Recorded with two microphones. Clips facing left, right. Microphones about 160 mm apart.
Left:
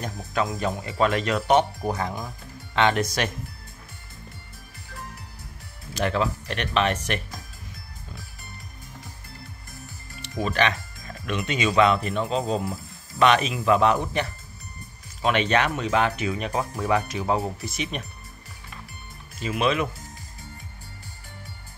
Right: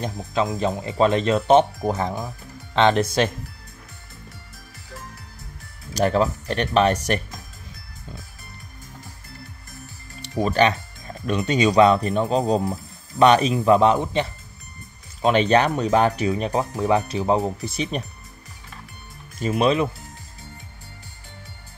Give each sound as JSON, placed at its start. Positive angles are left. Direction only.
{"t": 0.0, "sound": "speech", "side_deg": -25}
{"t": 5.9, "sound": "speech", "side_deg": -40}
{"t": 10.2, "sound": "speech", "side_deg": -35}
{"t": 13.9, "sound": "speech", "side_deg": -20}
{"t": 15.2, "sound": "speech", "side_deg": -35}
{"t": 19.4, "sound": "speech", "side_deg": -35}